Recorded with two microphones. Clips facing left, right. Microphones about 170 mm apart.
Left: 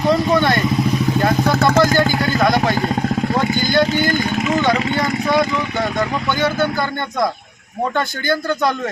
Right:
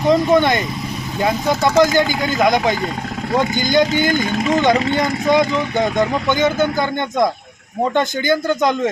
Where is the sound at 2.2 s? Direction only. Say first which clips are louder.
Even; 20° right (ahead or behind).